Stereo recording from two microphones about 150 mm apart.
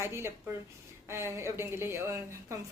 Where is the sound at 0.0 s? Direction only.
15° right (ahead or behind).